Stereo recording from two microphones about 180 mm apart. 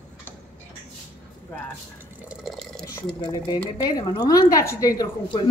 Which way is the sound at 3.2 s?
20° left (ahead or behind).